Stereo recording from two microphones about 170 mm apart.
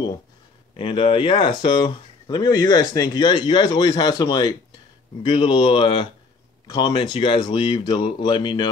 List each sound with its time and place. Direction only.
0.7 s speech: 30° left (ahead or behind)